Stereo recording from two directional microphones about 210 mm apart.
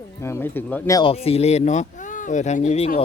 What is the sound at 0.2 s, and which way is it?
Speech, 15° left (ahead or behind).